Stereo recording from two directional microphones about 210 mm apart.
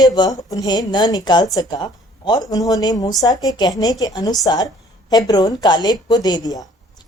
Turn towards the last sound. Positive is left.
turn(degrees=15)  # may be behind; listen again after turning